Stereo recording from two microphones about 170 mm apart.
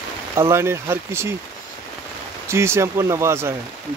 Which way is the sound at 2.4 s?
15° right (ahead or behind).